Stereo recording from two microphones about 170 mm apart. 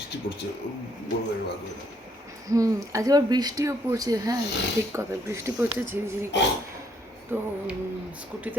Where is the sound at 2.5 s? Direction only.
20° right (ahead or behind).